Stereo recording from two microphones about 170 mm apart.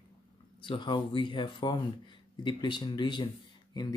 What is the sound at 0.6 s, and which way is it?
Speech, 30° left (ahead or behind).